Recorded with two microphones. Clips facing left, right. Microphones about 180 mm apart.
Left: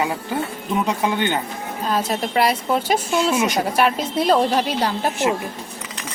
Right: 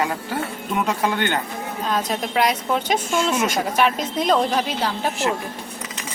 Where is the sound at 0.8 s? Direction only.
15° left (ahead or behind).